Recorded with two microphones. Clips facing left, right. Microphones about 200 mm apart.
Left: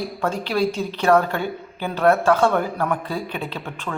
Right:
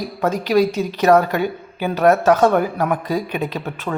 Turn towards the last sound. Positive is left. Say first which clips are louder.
# right 5 dB
turn(degrees=-30)  # may be behind; listen again after turning